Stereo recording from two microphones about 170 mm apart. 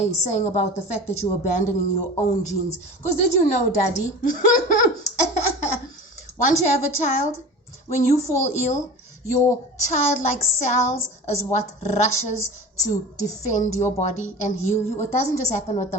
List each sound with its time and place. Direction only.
0.0 s a woman's voice: 45° left (ahead or behind)
9.8 s a woman's voice: 45° left (ahead or behind)